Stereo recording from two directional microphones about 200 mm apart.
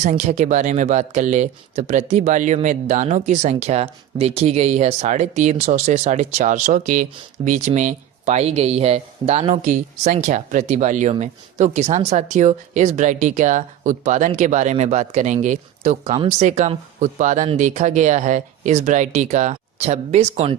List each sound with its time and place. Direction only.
0.0 s speech: 35° right (ahead or behind)
16.1 s speech: 25° right (ahead or behind)
16.5 s speech: 35° right (ahead or behind)